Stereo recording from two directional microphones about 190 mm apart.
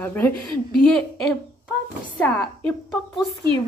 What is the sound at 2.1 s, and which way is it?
A woman's voice, 5° left (ahead or behind).